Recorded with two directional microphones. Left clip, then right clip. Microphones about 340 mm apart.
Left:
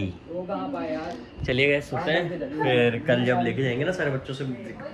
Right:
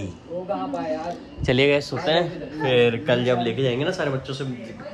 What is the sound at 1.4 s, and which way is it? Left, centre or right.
Speech, centre.